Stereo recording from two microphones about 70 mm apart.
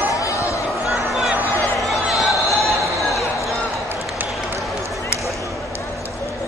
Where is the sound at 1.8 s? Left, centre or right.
Centre.